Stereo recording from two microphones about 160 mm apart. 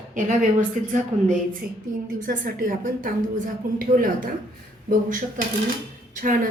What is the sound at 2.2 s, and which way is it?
A woman's voice, 60° right (ahead or behind).